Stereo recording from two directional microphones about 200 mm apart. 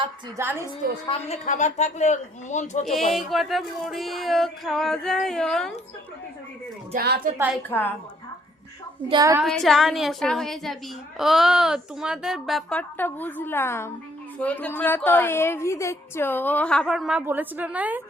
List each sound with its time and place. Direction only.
0.3 s a woman's voice: 10° right (ahead or behind)
1.0 s a woman's voice: 30° left (ahead or behind)
3.1 s speech: centre (ahead or behind)
6.9 s a woman's voice: 55° right (ahead or behind)
7.7 s a woman's voice: 10° left (ahead or behind)
9.0 s a woman's voice: 20° right (ahead or behind)
9.4 s a woman's voice: centre (ahead or behind)